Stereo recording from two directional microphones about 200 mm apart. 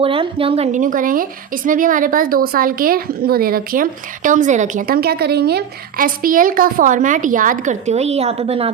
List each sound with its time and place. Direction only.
0.0 s a woman's voice: 25° right (ahead or behind)